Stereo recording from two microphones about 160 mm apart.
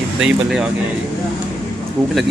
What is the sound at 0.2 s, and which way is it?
Speech, 5° right (ahead or behind).